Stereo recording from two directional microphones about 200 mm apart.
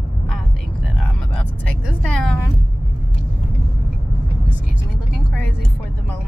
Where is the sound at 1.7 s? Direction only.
5° left (ahead or behind).